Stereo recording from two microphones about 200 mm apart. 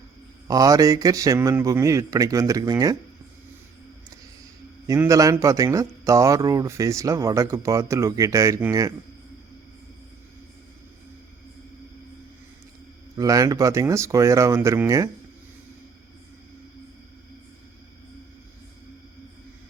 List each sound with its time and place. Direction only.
0.4 s speech: 20° right (ahead or behind)
4.9 s speech: 15° right (ahead or behind)
13.1 s speech: 15° right (ahead or behind)